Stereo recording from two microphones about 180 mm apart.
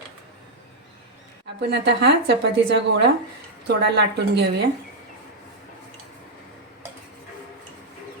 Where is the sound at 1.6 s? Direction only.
70° right (ahead or behind).